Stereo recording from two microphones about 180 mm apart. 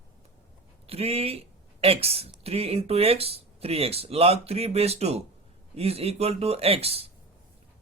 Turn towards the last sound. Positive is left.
turn(degrees=-35)  # may be behind; listen again after turning